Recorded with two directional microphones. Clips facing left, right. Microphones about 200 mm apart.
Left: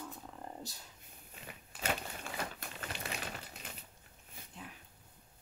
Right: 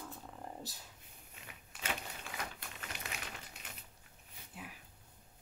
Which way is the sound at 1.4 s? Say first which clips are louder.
Left 5 dB; 35° left (ahead or behind).